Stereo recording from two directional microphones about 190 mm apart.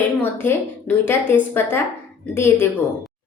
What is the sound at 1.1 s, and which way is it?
A woman's voice, 10° left (ahead or behind).